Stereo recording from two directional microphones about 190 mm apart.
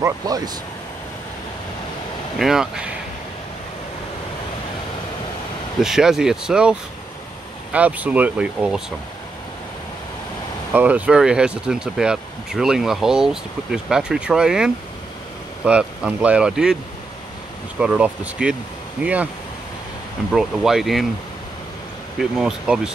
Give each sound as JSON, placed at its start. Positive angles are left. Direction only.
{"t": 0.2, "sound": "speech", "side_deg": -20}
{"t": 2.3, "sound": "speech", "side_deg": 0}
{"t": 5.8, "sound": "speech", "side_deg": 0}
{"t": 10.7, "sound": "speech", "side_deg": -10}
{"t": 17.7, "sound": "speech", "side_deg": -5}
{"t": 20.2, "sound": "speech", "side_deg": 0}
{"t": 22.2, "sound": "speech", "side_deg": -5}